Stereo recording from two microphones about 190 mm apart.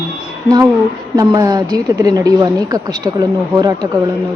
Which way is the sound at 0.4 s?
20° right (ahead or behind).